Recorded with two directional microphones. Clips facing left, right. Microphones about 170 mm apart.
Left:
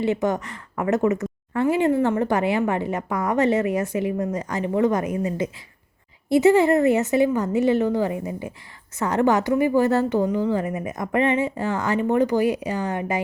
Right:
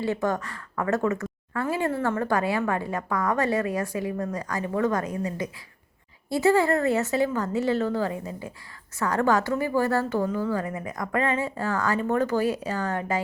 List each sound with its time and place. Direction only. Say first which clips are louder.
0.0 s a woman's voice: left 4 dB; 20° left (ahead or behind)